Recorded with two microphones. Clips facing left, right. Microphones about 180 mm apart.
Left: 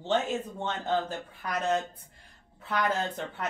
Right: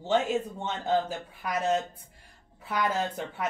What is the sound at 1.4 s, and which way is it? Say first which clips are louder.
A woman's voice: right 1 dB; 10° right (ahead or behind).